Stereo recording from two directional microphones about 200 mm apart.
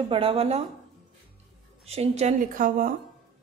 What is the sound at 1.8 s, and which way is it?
A woman's voice, 30° right (ahead or behind).